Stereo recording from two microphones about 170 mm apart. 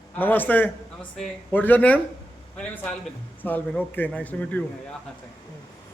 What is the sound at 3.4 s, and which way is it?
A man's voice, 10° left (ahead or behind).